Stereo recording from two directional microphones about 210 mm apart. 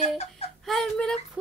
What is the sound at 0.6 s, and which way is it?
Child singing, centre (ahead or behind).